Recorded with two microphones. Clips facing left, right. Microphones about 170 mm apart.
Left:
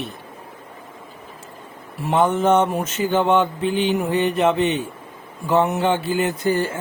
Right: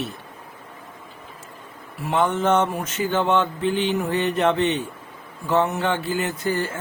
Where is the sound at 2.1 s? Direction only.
10° left (ahead or behind).